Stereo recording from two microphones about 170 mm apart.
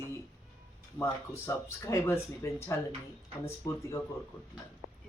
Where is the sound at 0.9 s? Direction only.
15° left (ahead or behind).